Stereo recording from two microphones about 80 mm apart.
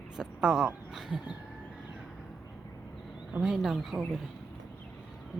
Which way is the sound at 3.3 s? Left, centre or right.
Centre.